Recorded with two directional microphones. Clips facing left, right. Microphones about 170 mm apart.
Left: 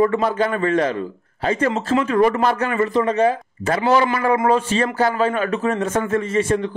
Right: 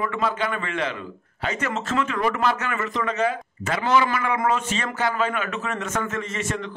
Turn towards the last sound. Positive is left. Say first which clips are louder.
# left 10 dB
turn(degrees=30)  # may be behind; listen again after turning